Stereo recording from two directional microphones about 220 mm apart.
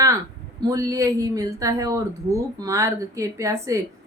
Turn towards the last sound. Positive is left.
turn(degrees=-15)  # may be behind; listen again after turning